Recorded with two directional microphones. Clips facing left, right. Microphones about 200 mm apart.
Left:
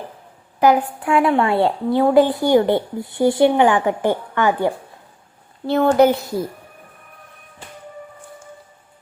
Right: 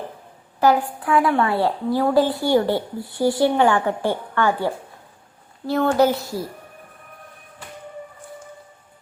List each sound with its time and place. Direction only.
0.6 s a woman's voice: 20° left (ahead or behind)